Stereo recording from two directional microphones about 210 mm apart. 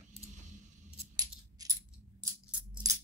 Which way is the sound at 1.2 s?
15° right (ahead or behind).